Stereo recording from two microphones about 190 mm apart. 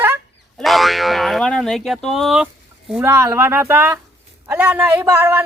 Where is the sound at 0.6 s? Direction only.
Centre (ahead or behind).